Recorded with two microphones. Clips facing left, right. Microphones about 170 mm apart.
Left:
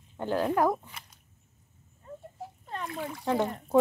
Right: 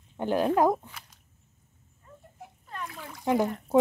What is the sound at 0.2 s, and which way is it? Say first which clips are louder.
Speech: right 3 dB; 15° right (ahead or behind).